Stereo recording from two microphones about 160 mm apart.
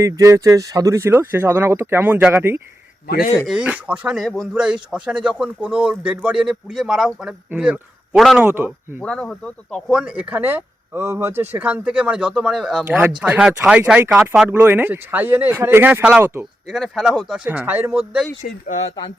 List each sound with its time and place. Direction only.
0.0 s speech: 20° right (ahead or behind)
9.0 s speech: 5° left (ahead or behind)
10.0 s speech: 5° right (ahead or behind)
16.6 s speech: centre (ahead or behind)
18.7 s speech: 45° left (ahead or behind)